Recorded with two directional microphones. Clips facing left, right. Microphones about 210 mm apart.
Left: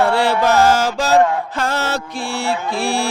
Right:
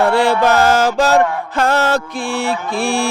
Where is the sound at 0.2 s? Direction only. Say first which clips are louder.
Right 1 dB; 55° right (ahead or behind).